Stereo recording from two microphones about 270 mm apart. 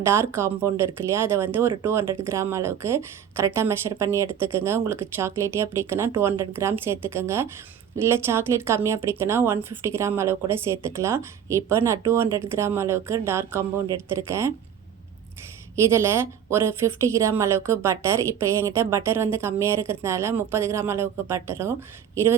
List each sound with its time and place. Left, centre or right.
0.0 s speech: centre
15.7 s speech: centre